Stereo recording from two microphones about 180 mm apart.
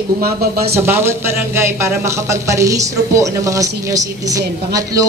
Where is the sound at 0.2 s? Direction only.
60° right (ahead or behind).